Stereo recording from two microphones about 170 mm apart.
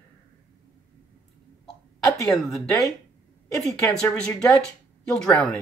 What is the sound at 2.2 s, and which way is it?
Speech, centre (ahead or behind).